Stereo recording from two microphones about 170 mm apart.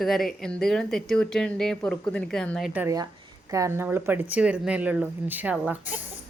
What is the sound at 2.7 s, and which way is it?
Speech, 15° right (ahead or behind).